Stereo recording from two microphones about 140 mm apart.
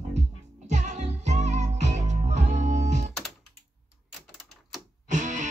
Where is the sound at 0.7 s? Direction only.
60° right (ahead or behind).